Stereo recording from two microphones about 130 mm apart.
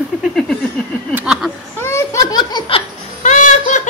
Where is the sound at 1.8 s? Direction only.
20° left (ahead or behind).